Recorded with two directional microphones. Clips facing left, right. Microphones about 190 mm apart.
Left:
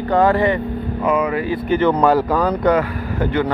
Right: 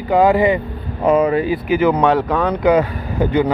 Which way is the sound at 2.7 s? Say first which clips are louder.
Right 3 dB; 15° right (ahead or behind).